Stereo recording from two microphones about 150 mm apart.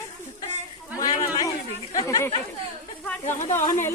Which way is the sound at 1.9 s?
25° left (ahead or behind).